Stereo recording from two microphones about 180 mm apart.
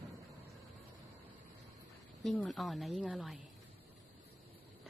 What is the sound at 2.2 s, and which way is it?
A woman's voice, centre (ahead or behind).